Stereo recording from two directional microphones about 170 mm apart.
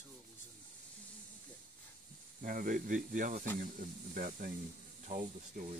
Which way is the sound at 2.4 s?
50° right (ahead or behind).